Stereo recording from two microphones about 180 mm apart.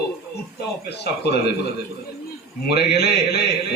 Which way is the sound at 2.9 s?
65° left (ahead or behind).